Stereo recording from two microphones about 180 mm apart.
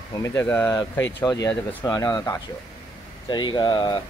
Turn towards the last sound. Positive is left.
turn(degrees=25)  # may be behind; listen again after turning